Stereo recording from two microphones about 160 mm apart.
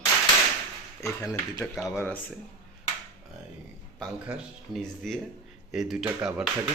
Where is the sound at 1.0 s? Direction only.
20° left (ahead or behind).